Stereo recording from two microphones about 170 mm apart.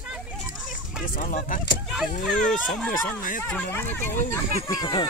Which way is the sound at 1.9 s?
Centre (ahead or behind).